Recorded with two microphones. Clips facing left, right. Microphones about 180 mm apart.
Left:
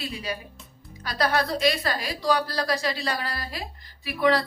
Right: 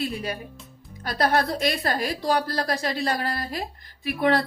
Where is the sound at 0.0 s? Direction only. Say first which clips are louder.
Right 4 dB; 55° right (ahead or behind).